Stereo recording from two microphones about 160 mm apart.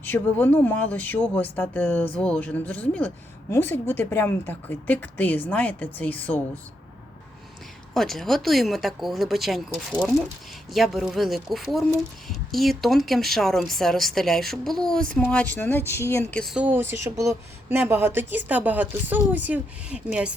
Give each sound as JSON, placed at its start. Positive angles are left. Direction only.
{"t": 0.0, "sound": "speech", "side_deg": 10}
{"t": 7.9, "sound": "speech", "side_deg": 0}
{"t": 16.4, "sound": "speech", "side_deg": 0}
{"t": 16.6, "sound": "speech", "side_deg": -15}